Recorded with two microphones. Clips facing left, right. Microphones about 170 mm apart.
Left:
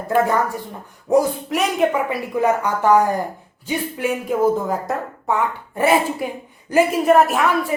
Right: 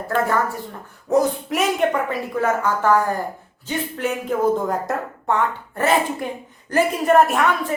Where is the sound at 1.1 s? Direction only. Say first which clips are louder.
Left 2 dB; 10° left (ahead or behind).